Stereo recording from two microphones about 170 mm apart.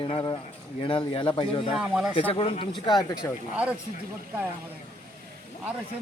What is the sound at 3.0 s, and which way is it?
Speech, 20° left (ahead or behind).